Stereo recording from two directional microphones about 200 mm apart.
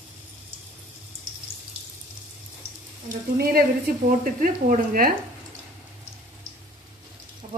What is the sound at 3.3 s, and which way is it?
A woman's voice, 50° right (ahead or behind).